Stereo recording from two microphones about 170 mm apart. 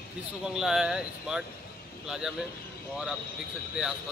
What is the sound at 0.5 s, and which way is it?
Speech, 5° right (ahead or behind).